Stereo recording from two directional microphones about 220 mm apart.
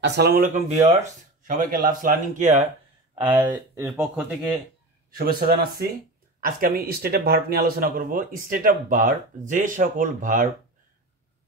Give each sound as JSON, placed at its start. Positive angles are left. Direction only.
{"t": 0.0, "sound": "speech", "side_deg": -50}
{"t": 3.2, "sound": "speech", "side_deg": -10}
{"t": 5.1, "sound": "speech", "side_deg": -40}